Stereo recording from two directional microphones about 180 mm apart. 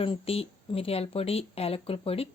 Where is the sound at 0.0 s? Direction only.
30° left (ahead or behind).